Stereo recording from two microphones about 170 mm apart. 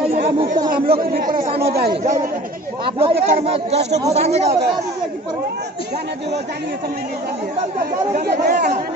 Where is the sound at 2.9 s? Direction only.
35° right (ahead or behind).